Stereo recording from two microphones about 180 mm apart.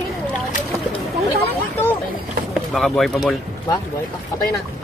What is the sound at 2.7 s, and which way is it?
Speech, centre (ahead or behind).